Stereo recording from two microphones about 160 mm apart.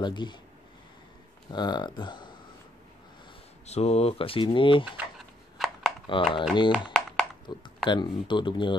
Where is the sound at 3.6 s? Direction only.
40° left (ahead or behind).